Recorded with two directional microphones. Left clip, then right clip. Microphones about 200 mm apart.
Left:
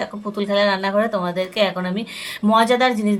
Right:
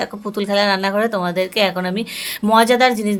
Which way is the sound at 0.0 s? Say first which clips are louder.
Right 2 dB; 35° right (ahead or behind).